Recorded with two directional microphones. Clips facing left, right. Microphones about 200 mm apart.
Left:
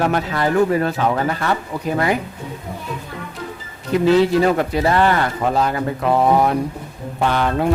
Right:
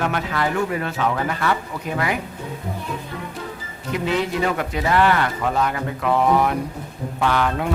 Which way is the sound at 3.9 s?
35° left (ahead or behind).